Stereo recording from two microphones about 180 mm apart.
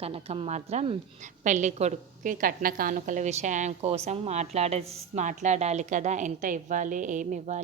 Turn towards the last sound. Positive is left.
turn(degrees=-45)  # may be behind; listen again after turning